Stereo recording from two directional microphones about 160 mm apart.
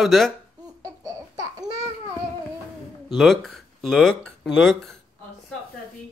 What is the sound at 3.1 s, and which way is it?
Speech, centre (ahead or behind).